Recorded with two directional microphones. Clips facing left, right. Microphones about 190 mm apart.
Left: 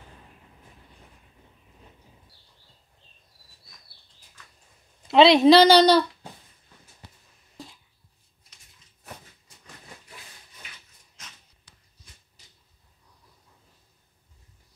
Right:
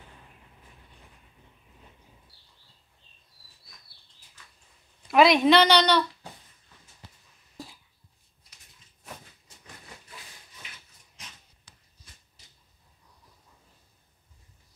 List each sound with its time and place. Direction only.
5.0 s a woman's voice: 25° left (ahead or behind)